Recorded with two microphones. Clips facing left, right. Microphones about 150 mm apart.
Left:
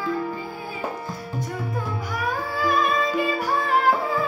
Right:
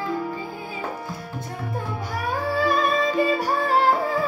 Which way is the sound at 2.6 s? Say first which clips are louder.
Right 1 dB; 35° right (ahead or behind).